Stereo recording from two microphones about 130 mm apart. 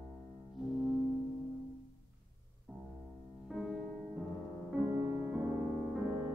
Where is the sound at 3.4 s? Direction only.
Centre (ahead or behind).